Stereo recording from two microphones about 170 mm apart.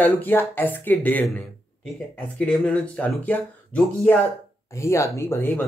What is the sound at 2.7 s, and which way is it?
Speech, 5° left (ahead or behind).